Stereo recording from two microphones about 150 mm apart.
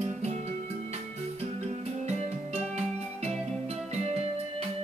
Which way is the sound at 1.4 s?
45° right (ahead or behind).